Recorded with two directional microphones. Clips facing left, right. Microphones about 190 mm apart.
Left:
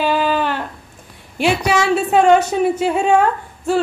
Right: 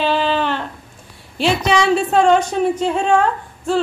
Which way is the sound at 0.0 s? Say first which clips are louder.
Even; 10° left (ahead or behind).